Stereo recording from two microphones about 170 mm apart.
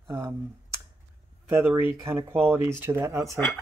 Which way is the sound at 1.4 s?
15° right (ahead or behind).